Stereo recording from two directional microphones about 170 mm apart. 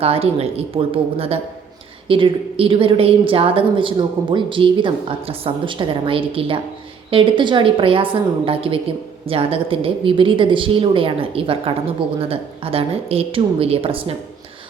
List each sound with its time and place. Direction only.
0.0 s a woman's voice: 35° right (ahead or behind)